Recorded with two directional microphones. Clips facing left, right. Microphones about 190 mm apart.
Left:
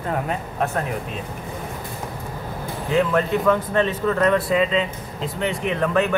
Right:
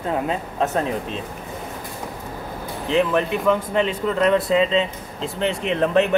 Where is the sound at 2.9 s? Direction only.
15° right (ahead or behind).